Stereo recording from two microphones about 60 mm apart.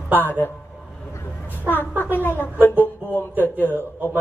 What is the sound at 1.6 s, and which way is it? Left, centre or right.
A woman's voice, left.